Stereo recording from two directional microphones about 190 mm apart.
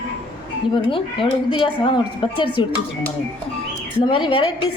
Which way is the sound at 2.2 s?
25° left (ahead or behind).